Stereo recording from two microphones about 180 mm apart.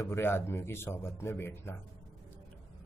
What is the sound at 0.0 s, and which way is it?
Speech, 15° left (ahead or behind).